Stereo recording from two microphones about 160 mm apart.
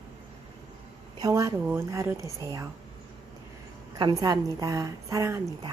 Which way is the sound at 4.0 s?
25° right (ahead or behind).